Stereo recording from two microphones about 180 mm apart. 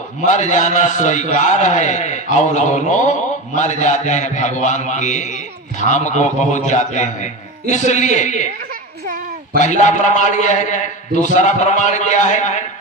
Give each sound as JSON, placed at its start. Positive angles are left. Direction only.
{"t": 0.2, "sound": "a man's voice", "side_deg": 40}
{"t": 9.6, "sound": "a man's voice", "side_deg": 40}